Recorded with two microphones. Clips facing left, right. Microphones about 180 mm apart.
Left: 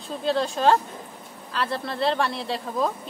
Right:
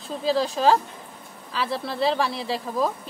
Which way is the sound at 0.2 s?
Centre (ahead or behind).